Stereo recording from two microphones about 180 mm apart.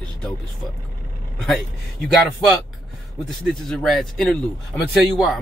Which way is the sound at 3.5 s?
Centre (ahead or behind).